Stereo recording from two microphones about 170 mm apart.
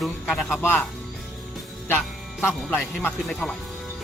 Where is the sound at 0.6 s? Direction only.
10° left (ahead or behind).